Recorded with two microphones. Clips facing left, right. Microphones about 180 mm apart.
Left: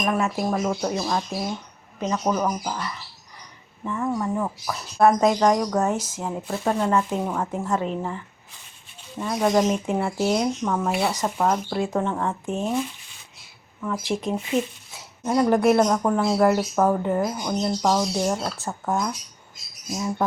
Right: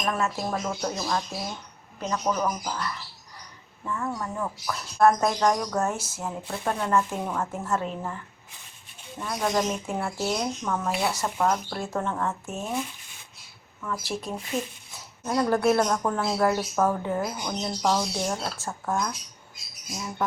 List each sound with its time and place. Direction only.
0.0 s speech: 15° left (ahead or behind)
4.9 s speech: 10° left (ahead or behind)
9.2 s speech: 15° left (ahead or behind)
12.5 s speech: 25° left (ahead or behind)
13.8 s speech: 20° left (ahead or behind)